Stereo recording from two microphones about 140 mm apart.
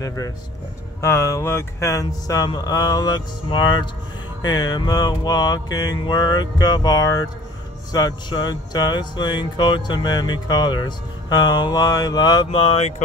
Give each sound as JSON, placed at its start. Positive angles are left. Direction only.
{"t": 0.0, "sound": "mantra", "side_deg": 25}
{"t": 7.9, "sound": "speech", "side_deg": 30}
{"t": 12.4, "sound": "speech", "side_deg": 40}